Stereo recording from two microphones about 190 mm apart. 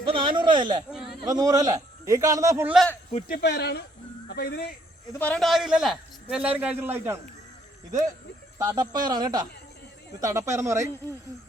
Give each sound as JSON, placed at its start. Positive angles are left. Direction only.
{"t": 0.0, "sound": "speech", "side_deg": -25}
{"t": 0.9, "sound": "speech", "side_deg": 0}
{"t": 1.3, "sound": "a man's voice", "side_deg": -20}
{"t": 2.7, "sound": "a man's voice", "side_deg": 5}
{"t": 3.2, "sound": "speech", "side_deg": 55}
{"t": 5.1, "sound": "a man's voice", "side_deg": 5}
{"t": 8.5, "sound": "a man's voice", "side_deg": -20}